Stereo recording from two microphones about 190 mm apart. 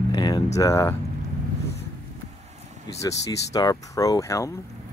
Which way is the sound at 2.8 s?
15° left (ahead or behind).